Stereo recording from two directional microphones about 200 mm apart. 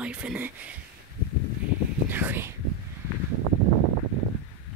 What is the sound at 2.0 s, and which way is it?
Speech, 10° right (ahead or behind).